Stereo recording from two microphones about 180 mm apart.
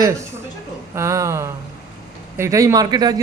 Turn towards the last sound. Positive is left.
turn(degrees=-20)  # may be behind; listen again after turning